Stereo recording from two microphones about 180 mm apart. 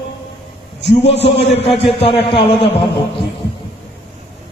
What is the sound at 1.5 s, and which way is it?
A man's voice, 30° left (ahead or behind).